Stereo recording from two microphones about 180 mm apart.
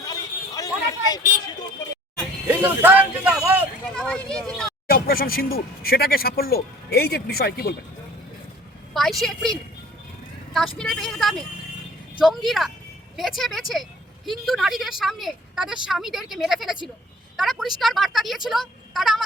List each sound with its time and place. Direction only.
0.0 s a sound: 20° left (ahead or behind)
1.1 s speech: 20° left (ahead or behind)
2.5 s vehicle: 10° right (ahead or behind)
3.9 s a sound: 5° left (ahead or behind)
4.9 s speech: 55° left (ahead or behind)
8.9 s a woman's voice: centre (ahead or behind)